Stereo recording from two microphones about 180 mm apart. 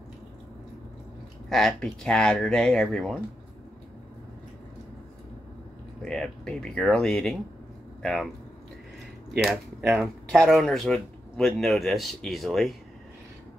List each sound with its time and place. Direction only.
1.5 s speech: 5° left (ahead or behind)
6.0 s speech: 5° left (ahead or behind)
9.4 s speech: centre (ahead or behind)